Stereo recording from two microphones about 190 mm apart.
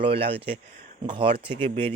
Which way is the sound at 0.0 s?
30° right (ahead or behind).